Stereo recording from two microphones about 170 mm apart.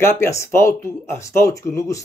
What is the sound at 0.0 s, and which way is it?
Speech, 15° left (ahead or behind).